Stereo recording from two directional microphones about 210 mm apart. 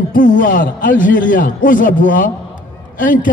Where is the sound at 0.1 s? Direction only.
40° left (ahead or behind).